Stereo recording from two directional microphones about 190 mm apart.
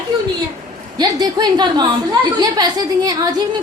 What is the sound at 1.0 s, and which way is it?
A child's voice, 20° right (ahead or behind).